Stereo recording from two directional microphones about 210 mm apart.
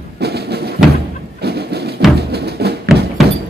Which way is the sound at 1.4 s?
50° right (ahead or behind).